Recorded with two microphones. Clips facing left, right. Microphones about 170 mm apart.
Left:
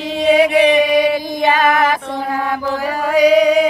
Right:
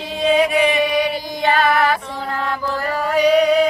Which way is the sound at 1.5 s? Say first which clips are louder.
Even; 90° left.